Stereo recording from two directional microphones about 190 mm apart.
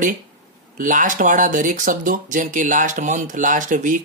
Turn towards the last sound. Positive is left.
turn(degrees=-40)  # may be behind; listen again after turning